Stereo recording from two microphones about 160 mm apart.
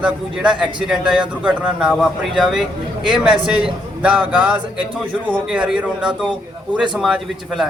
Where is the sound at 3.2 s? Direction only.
35° right (ahead or behind).